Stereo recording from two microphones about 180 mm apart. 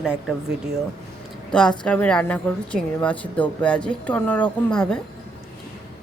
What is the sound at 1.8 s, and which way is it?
A woman's voice, 5° left (ahead or behind).